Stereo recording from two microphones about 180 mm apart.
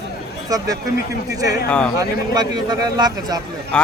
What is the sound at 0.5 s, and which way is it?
Speech, 20° right (ahead or behind).